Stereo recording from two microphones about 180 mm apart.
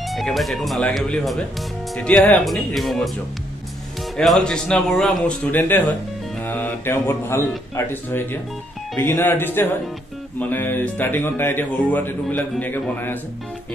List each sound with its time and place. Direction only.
0.1 s speech: centre (ahead or behind)
4.2 s speech: 5° left (ahead or behind)